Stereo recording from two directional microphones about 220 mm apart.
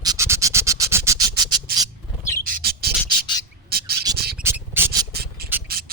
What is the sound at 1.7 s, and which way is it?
Bird, 45° right (ahead or behind).